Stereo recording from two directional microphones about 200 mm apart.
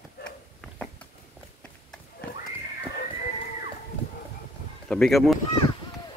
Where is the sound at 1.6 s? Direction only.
5° left (ahead or behind).